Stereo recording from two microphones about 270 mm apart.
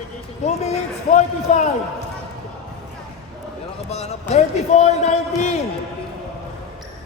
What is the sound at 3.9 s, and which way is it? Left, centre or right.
Speech, left.